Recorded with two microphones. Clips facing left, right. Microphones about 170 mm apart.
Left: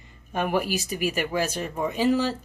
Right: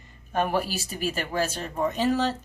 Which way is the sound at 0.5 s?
10° left (ahead or behind).